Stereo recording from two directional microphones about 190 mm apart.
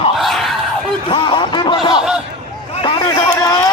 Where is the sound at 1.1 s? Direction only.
25° left (ahead or behind).